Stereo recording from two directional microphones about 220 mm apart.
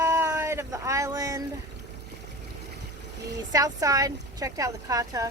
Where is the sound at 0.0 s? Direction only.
15° right (ahead or behind).